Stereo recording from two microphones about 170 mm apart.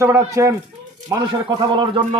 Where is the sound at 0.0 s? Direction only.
20° right (ahead or behind).